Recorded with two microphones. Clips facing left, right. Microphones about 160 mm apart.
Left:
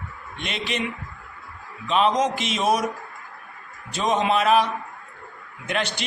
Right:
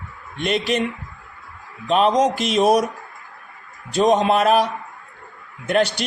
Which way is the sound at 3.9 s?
40° right (ahead or behind).